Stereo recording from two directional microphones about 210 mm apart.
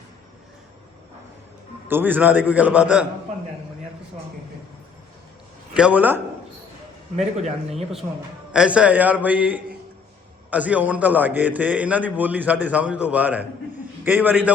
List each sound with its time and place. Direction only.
1.9 s a man's voice: 10° right (ahead or behind)
5.7 s a man's voice: 5° right (ahead or behind)
7.2 s a man's voice: 30° right (ahead or behind)
8.5 s a man's voice: 5° right (ahead or behind)